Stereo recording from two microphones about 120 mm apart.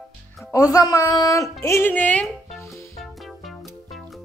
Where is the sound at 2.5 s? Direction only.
Centre (ahead or behind).